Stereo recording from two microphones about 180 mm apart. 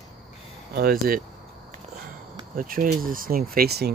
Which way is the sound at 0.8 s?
55° right (ahead or behind).